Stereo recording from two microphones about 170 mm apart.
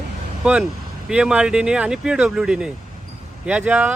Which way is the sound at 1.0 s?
5° right (ahead or behind).